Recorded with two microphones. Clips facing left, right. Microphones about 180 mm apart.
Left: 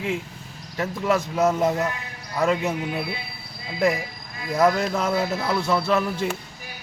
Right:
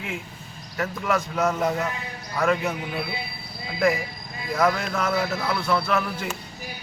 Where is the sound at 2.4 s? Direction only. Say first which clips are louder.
Left 1 dB; 25° left (ahead or behind).